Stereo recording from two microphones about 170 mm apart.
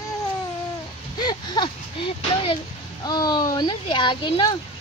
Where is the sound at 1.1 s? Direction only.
25° left (ahead or behind).